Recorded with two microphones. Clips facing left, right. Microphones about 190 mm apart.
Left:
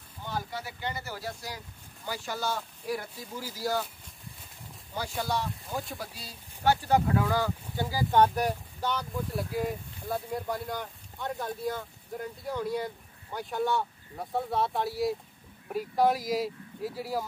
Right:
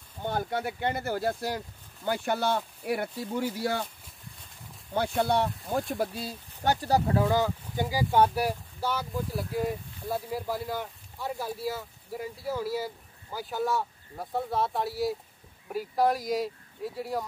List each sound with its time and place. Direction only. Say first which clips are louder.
0.2 s speech: right 6 dB; 55° right (ahead or behind)
4.9 s speech: right 6 dB; 60° right (ahead or behind)
6.8 s speech: right 1 dB; 35° right (ahead or behind)
7.2 s speech: right 3 dB; 20° right (ahead or behind); by 17.2 s centre (ahead or behind)